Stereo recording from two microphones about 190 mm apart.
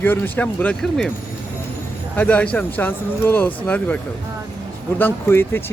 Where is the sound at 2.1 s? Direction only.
5° left (ahead or behind).